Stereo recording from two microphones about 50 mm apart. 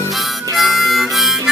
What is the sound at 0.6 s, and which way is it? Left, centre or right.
Harmonica, centre.